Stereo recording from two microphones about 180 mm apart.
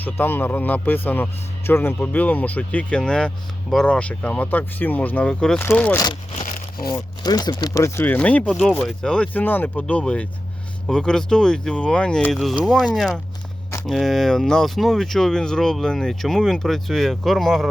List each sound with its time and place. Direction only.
0.0 s speech: 10° left (ahead or behind)
6.3 s crumpling: 50° left (ahead or behind)
6.9 s speech: 20° left (ahead or behind); by 17.7 s centre (ahead or behind)